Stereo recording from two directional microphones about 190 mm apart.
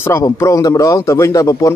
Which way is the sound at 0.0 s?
15° left (ahead or behind).